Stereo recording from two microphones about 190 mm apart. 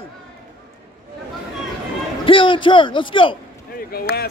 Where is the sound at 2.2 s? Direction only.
25° left (ahead or behind).